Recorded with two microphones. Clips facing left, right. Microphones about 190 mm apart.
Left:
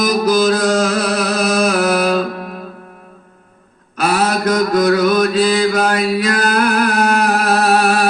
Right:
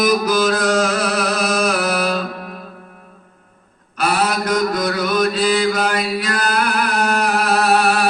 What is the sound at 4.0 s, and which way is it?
Mantra, 45° left (ahead or behind).